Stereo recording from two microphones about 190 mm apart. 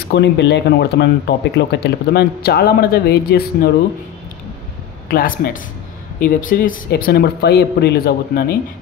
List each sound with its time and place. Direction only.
0.1 s speech: 65° left (ahead or behind)
5.0 s speech: 50° left (ahead or behind)